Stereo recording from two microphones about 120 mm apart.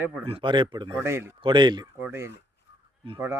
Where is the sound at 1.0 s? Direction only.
20° right (ahead or behind).